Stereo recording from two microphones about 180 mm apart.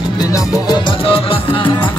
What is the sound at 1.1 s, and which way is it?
Music, 30° left (ahead or behind).